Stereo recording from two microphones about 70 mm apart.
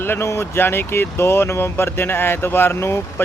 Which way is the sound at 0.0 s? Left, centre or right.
Left.